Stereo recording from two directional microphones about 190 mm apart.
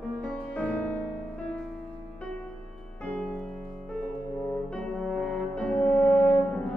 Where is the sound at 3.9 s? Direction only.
5° left (ahead or behind).